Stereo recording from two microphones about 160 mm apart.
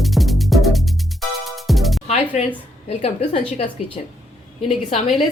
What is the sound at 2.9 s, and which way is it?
Speech, 40° left (ahead or behind).